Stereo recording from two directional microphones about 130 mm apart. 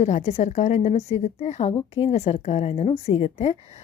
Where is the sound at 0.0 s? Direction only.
60° left (ahead or behind).